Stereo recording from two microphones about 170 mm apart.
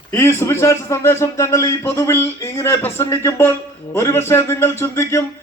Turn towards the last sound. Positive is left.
turn(degrees=15)  # may be behind; listen again after turning